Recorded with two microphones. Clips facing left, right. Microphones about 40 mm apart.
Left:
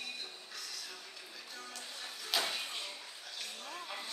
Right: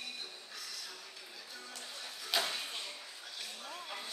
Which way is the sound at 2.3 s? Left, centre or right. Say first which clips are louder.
Right 1 dB; centre.